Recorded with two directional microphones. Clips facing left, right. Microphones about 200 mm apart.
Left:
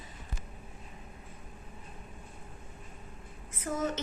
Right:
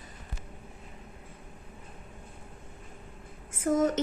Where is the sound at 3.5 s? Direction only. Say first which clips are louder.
Right 8 dB; 50° right (ahead or behind).